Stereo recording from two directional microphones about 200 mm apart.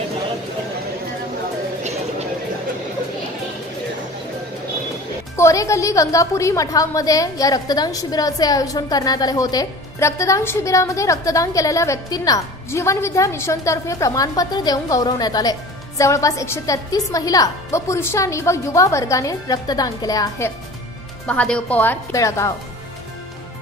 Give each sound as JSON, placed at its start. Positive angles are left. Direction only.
{"t": 1.8, "sound": "a sound", "side_deg": -35}
{"t": 5.3, "sound": "a woman's voice", "side_deg": 15}
{"t": 21.3, "sound": "a woman's voice", "side_deg": 5}